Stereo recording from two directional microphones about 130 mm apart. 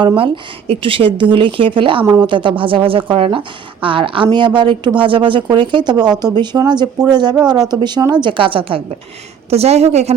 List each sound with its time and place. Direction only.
0.7 s speech: 45° right (ahead or behind)
9.5 s a woman's voice: 55° right (ahead or behind)